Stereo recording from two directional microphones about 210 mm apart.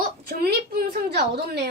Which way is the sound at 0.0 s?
45° right (ahead or behind).